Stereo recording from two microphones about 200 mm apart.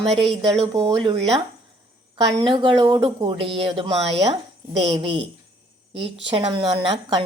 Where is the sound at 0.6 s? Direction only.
20° right (ahead or behind).